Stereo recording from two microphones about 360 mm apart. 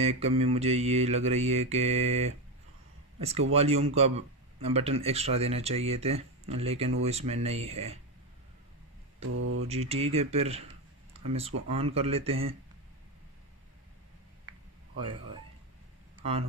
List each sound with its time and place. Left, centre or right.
0.0 s speech: centre
9.2 s speech: right
9.7 s speech: centre
15.0 s speech: centre